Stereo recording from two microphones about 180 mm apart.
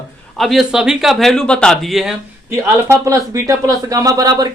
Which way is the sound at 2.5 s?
15° right (ahead or behind).